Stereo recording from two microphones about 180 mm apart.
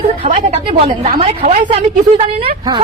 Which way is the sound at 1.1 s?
35° right (ahead or behind).